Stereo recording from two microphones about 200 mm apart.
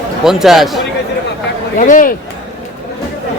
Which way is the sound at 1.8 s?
40° left (ahead or behind).